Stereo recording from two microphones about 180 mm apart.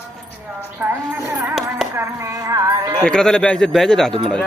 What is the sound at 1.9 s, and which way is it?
Music, 15° right (ahead or behind).